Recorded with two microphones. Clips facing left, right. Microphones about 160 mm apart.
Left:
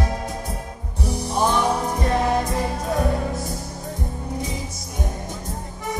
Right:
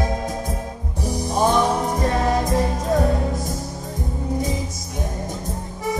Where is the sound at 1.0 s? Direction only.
45° right (ahead or behind).